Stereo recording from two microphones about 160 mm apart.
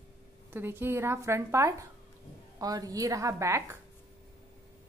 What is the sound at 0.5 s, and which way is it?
A woman's voice, 15° right (ahead or behind).